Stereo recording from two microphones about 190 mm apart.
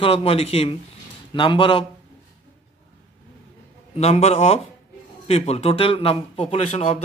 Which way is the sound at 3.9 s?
35° left (ahead or behind).